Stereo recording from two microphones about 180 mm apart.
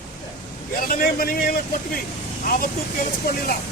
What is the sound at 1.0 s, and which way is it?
Speech, 55° left (ahead or behind).